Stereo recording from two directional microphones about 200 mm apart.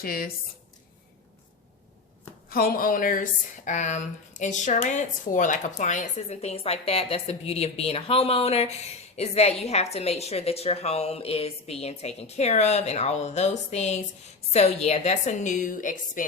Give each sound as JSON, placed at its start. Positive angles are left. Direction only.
{"t": 0.0, "sound": "speech", "side_deg": 45}
{"t": 2.5, "sound": "speech", "side_deg": 45}